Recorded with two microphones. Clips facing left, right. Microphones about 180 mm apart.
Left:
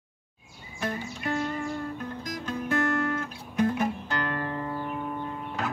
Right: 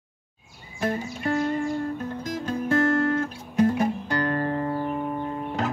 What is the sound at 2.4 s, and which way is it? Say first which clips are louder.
Music: right 5 dB; 30° right (ahead or behind).